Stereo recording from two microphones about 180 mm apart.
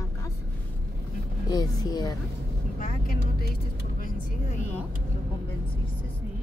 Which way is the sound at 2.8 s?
50° left (ahead or behind).